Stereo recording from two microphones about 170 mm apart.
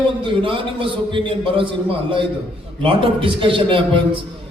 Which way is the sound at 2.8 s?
30° right (ahead or behind).